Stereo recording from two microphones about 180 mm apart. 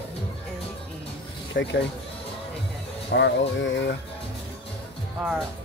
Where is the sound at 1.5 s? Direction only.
80° left.